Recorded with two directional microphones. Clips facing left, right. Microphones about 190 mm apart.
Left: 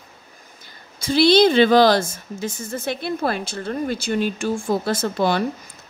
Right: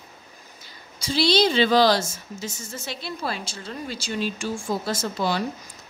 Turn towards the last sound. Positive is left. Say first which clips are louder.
# left 5 dB
turn(degrees=60)  # may be behind; listen again after turning